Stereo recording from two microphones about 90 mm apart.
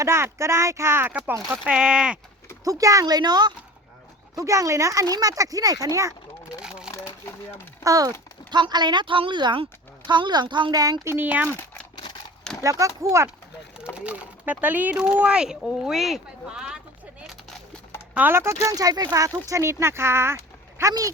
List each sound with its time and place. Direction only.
0.0 s speech: 30° right (ahead or behind)
1.5 s speech: 10° right (ahead or behind)
2.6 s speech: 40° right (ahead or behind)
4.4 s speech: 35° right (ahead or behind)
6.6 s a sound: 10° right (ahead or behind)
6.9 s a sound: 30° left (ahead or behind)
7.9 s speech: 40° right (ahead or behind)
8.4 s a woman's voice: 55° right (ahead or behind)
11.0 s speech: 25° right (ahead or behind)
12.6 s speech: 35° right (ahead or behind)
13.9 s speech: 15° right (ahead or behind)
18.1 s speech: 20° right (ahead or behind)
18.7 s speech: 45° right (ahead or behind)